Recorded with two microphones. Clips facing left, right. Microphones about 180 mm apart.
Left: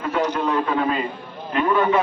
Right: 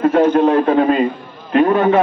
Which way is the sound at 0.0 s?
50° right (ahead or behind).